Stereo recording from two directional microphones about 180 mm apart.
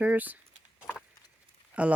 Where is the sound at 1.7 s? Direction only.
5° right (ahead or behind).